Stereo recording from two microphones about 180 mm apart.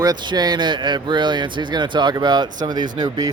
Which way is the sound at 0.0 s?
25° right (ahead or behind).